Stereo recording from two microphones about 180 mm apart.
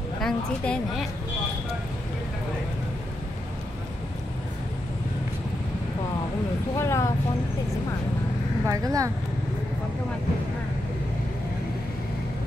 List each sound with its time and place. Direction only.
0.2 s a woman's voice: centre (ahead or behind)
6.8 s speech: 15° left (ahead or behind)
8.6 s speech: 20° right (ahead or behind)